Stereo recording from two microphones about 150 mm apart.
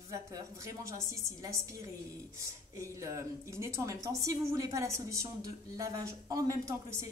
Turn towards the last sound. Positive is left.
turn(degrees=-20)  # may be behind; listen again after turning